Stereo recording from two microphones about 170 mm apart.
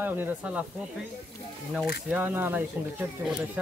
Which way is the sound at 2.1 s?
10° right (ahead or behind).